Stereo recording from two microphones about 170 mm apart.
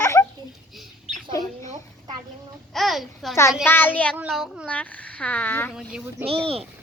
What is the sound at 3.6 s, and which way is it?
A woman's voice, 10° left (ahead or behind).